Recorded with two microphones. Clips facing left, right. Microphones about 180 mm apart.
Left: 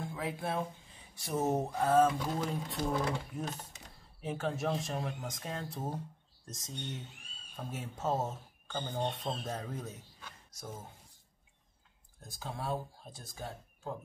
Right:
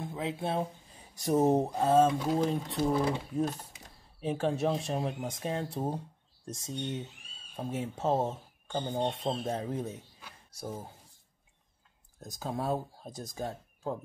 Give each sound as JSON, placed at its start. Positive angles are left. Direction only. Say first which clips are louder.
{"t": 0.0, "sound": "speech", "louder": "right 3 dB", "side_deg": -20}
{"t": 1.1, "sound": "speech", "louder": "right 7 dB", "side_deg": -40}
{"t": 2.5, "sound": "speech", "louder": "right 5 dB", "side_deg": 0}
{"t": 4.2, "sound": "speech", "louder": "right 6 dB", "side_deg": -30}
{"t": 12.2, "sound": "speech", "louder": "right 7 dB", "side_deg": -40}